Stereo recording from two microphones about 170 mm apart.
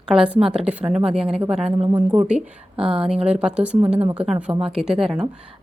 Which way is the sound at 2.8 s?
30° right (ahead or behind).